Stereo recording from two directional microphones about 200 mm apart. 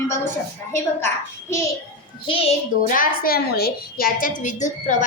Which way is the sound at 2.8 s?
45° left (ahead or behind).